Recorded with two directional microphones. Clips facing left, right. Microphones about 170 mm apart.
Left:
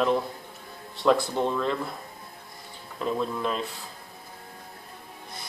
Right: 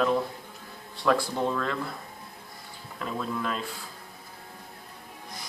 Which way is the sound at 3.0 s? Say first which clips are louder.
Left 4 dB; 20° left (ahead or behind).